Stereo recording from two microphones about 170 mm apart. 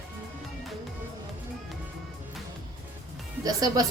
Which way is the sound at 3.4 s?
20° right (ahead or behind).